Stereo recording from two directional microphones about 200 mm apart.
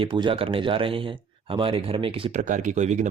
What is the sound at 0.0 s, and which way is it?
Speech, 25° right (ahead or behind).